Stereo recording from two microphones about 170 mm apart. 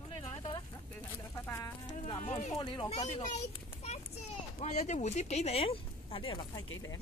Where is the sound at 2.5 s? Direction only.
30° left (ahead or behind).